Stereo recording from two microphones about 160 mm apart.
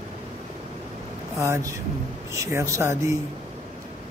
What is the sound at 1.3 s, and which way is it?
Speech, 20° right (ahead or behind).